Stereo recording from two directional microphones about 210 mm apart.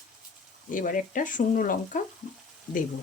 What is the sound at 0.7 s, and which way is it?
Speech, 40° left (ahead or behind).